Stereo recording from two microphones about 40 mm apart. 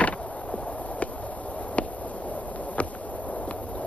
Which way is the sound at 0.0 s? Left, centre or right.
Left.